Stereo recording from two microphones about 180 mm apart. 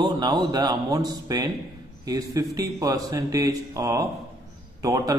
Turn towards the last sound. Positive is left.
turn(degrees=-20)  # may be behind; listen again after turning